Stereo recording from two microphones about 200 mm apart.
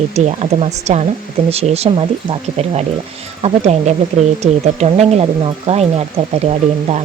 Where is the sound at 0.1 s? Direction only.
35° right (ahead or behind).